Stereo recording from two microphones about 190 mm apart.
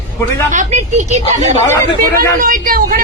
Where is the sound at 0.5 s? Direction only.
40° right (ahead or behind).